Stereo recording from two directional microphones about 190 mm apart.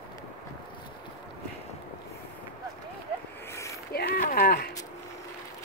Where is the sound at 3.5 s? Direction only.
15° left (ahead or behind).